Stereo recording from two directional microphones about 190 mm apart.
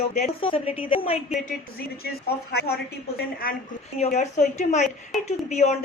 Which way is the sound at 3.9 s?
35° left (ahead or behind).